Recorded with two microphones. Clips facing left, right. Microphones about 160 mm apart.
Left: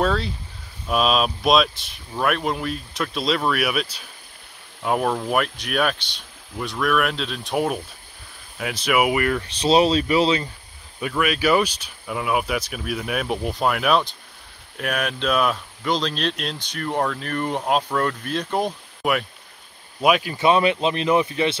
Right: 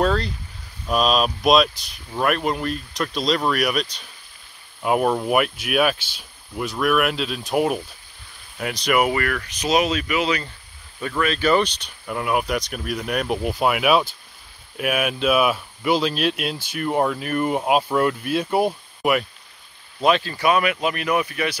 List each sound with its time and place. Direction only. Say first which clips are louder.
0.0 s speech: right 1 dB; centre (ahead or behind)
4.8 s speech: right 2 dB; 5° right (ahead or behind)
9.1 s speech: left 2 dB; 20° left (ahead or behind)
9.5 s speech: left 4 dB; 30° left (ahead or behind)
11.0 s speech: even; 10° left (ahead or behind)
20.0 s speech: even; 10° left (ahead or behind)
20.3 s speech: left 2 dB; 25° left (ahead or behind)